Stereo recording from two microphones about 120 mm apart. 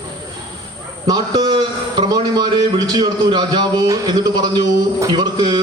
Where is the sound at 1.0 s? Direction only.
35° right (ahead or behind).